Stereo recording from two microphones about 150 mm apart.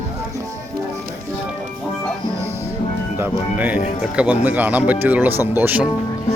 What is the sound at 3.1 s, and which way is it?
Speech, 10° right (ahead or behind).